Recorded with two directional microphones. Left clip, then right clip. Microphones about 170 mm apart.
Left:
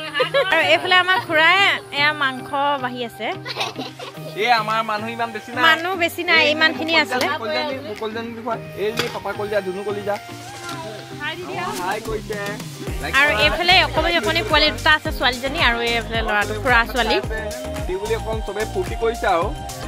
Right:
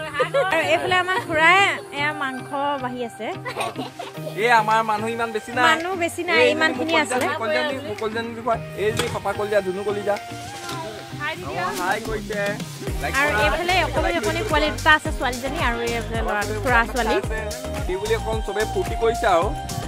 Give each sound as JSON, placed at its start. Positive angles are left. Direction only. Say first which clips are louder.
{"t": 0.3, "sound": "speech", "louder": "left 4 dB", "side_deg": 0}
{"t": 4.4, "sound": "music", "louder": "right 1 dB", "side_deg": -70}
{"t": 5.7, "sound": "speech", "louder": "left 3 dB", "side_deg": 0}
{"t": 8.2, "sound": "speech", "louder": "right 2 dB", "side_deg": 0}
{"t": 13.0, "sound": "speech", "louder": "left 4 dB", "side_deg": 5}
{"t": 19.2, "sound": "speech", "louder": "even", "side_deg": -10}